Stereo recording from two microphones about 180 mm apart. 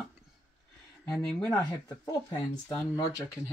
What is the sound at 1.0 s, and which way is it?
Speech, 5° left (ahead or behind).